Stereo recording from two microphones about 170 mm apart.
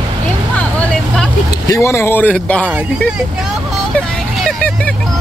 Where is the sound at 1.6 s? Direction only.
20° left (ahead or behind).